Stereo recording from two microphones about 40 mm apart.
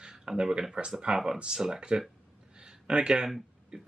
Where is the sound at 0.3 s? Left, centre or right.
Centre.